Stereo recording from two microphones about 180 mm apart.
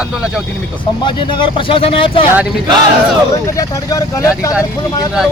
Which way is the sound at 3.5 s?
20° left (ahead or behind).